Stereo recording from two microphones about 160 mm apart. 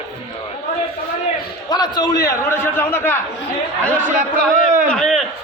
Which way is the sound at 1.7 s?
25° left (ahead or behind).